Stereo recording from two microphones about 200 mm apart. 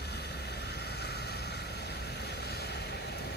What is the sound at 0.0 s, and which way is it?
Vehicle, 55° left (ahead or behind).